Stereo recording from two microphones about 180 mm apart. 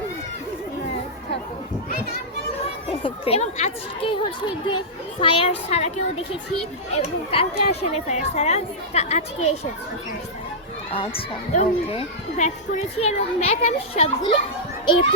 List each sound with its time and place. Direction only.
3.0 s speech: 35° left (ahead or behind)
10.9 s speech: 30° left (ahead or behind)